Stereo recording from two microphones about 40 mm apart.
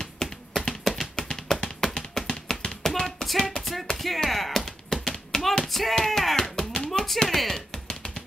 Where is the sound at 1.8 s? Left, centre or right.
Centre.